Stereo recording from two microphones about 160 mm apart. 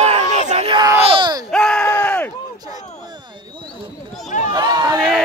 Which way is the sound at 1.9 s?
10° left (ahead or behind).